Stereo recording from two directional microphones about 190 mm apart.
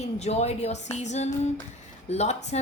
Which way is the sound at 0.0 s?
35° left (ahead or behind).